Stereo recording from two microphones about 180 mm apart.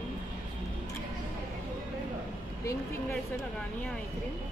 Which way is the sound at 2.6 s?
15° left (ahead or behind).